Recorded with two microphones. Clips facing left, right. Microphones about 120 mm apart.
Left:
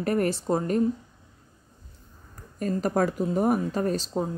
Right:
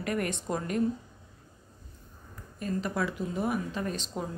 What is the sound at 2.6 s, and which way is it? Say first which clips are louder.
Speech: left 7 dB; 45° left (ahead or behind).